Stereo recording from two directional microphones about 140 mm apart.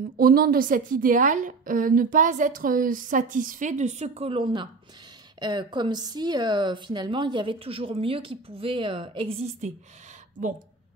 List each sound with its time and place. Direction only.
0.2 s a woman's voice: 90° right; by 9.4 s 40° right (ahead or behind)